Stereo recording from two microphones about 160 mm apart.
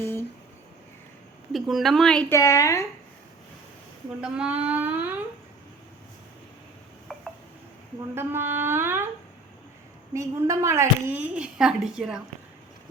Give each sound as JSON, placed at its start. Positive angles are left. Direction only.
{"t": 1.5, "sound": "speech", "side_deg": 0}
{"t": 2.3, "sound": "a woman's voice", "side_deg": 20}
{"t": 4.2, "sound": "a woman's voice", "side_deg": -5}
{"t": 7.1, "sound": "a sound", "side_deg": 5}
{"t": 8.1, "sound": "a woman's voice", "side_deg": -15}
{"t": 10.2, "sound": "a woman's voice", "side_deg": -20}